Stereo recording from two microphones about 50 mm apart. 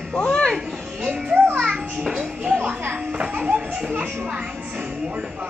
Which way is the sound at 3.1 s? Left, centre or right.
Right.